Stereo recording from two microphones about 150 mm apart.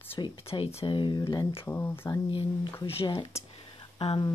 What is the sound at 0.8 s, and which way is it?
Speech, 30° left (ahead or behind).